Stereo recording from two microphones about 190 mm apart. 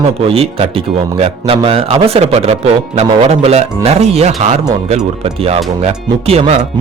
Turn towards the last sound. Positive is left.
turn(degrees=-35)  # may be behind; listen again after turning